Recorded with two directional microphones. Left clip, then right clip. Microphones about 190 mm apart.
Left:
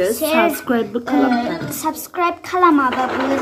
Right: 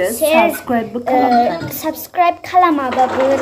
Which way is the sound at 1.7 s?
20° right (ahead or behind).